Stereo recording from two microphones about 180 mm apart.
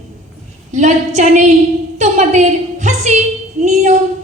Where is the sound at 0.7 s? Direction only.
40° right (ahead or behind).